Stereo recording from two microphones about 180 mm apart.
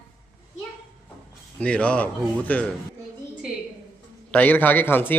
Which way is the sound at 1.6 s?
5° left (ahead or behind).